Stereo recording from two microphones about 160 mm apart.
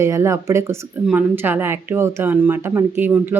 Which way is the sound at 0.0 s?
15° right (ahead or behind).